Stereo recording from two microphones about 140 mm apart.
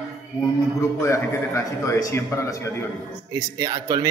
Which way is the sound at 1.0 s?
20° left (ahead or behind).